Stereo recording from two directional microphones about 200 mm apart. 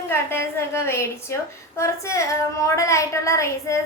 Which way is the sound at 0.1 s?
10° left (ahead or behind).